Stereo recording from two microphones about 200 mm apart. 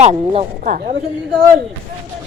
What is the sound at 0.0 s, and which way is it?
Speech, 30° right (ahead or behind).